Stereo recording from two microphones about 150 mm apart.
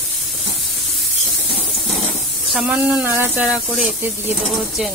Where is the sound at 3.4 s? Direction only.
5° right (ahead or behind).